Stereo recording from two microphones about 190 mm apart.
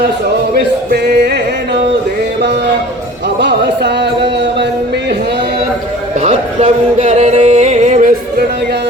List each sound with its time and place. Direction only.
0.5 s a sound: 60° right (ahead or behind)
3.4 s music: 65° right (ahead or behind)
6.1 s music: 40° right (ahead or behind)